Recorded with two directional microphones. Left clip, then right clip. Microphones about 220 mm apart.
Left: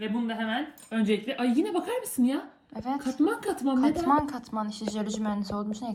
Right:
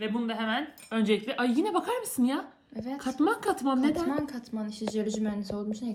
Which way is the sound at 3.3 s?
Centre (ahead or behind).